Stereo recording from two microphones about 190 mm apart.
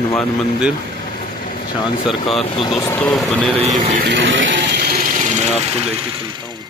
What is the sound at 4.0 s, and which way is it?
Vehicle, 70° right (ahead or behind).